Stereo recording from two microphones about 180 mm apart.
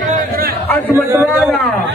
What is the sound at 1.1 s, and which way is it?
Speech, 15° right (ahead or behind).